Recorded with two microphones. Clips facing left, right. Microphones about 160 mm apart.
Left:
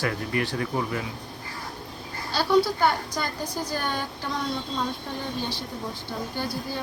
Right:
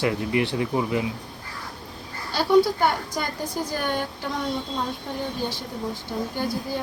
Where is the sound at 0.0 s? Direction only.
20° right (ahead or behind).